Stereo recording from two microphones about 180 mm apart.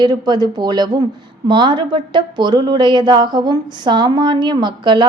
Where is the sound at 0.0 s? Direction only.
25° right (ahead or behind).